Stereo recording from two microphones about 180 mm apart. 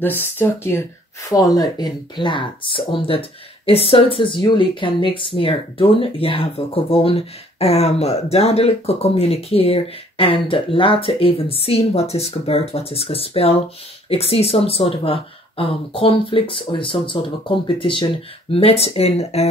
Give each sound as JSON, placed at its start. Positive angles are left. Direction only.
{"t": 0.0, "sound": "speech", "side_deg": 10}